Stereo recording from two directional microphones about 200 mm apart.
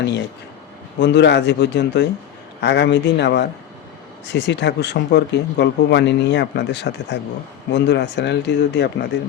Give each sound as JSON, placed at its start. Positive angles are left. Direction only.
{"t": 0.9, "sound": "speech", "side_deg": 60}